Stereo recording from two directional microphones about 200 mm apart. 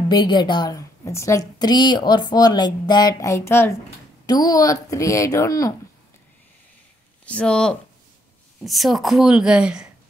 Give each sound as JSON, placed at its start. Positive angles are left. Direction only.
{"t": 0.1, "sound": "a woman's voice", "side_deg": 20}
{"t": 7.2, "sound": "speech", "side_deg": 5}